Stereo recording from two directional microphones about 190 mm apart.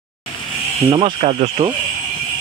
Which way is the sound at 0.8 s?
25° right (ahead or behind).